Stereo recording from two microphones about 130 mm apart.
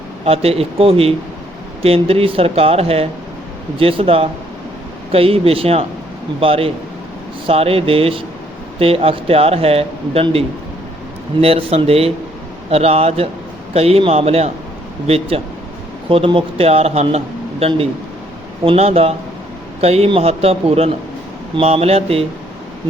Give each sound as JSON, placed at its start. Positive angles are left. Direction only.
{"t": 0.3, "sound": "speech", "side_deg": -50}
{"t": 11.3, "sound": "speech", "side_deg": -50}